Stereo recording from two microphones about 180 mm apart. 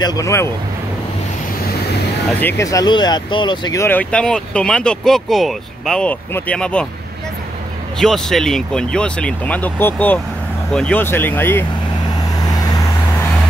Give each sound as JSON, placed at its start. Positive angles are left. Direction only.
{"t": 0.0, "sound": "speech", "side_deg": 20}
{"t": 2.4, "sound": "speech", "side_deg": 15}
{"t": 8.0, "sound": "speech", "side_deg": 0}
{"t": 12.4, "sound": "vehicle", "side_deg": 20}